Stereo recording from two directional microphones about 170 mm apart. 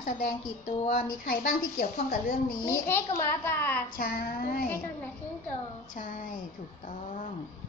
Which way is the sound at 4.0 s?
60° left (ahead or behind).